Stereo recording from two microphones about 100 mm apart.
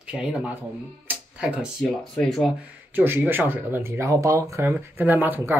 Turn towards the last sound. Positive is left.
turn(degrees=-20)  # may be behind; listen again after turning